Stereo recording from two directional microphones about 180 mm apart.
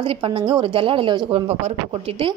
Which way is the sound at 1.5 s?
35° right (ahead or behind).